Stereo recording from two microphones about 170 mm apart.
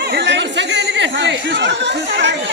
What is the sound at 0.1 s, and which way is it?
Chatter, 90° right.